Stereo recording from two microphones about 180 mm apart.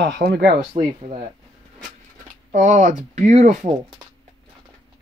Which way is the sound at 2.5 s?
40° right (ahead or behind).